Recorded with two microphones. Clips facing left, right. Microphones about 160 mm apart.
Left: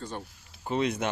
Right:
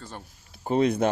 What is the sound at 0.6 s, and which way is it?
Speech, 40° right (ahead or behind).